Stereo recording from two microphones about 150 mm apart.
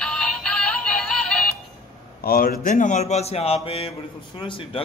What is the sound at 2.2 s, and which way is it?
Speech, 80° left.